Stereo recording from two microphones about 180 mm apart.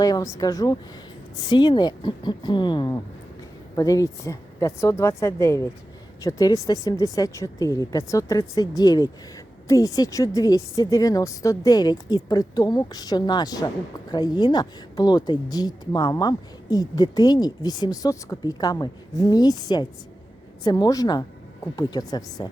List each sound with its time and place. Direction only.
0.0 s a woman's voice: 20° left (ahead or behind)